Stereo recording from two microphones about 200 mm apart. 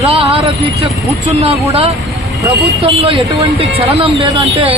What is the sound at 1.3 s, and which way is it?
Speech, 30° right (ahead or behind).